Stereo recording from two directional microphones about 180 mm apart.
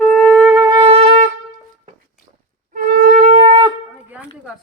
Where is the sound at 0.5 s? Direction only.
20° right (ahead or behind).